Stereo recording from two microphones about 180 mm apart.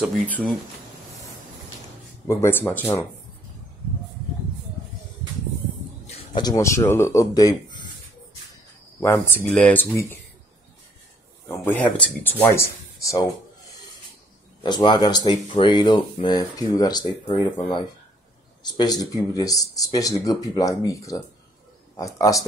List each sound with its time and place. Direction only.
2.2 s a man's voice: 15° left (ahead or behind)
6.0 s a sound: 35° left (ahead or behind)
6.4 s a man's voice: 15° left (ahead or behind)
9.0 s a man's voice: 15° left (ahead or behind)
11.4 s a man's voice: 10° left (ahead or behind)
14.6 s speech: 25° left (ahead or behind)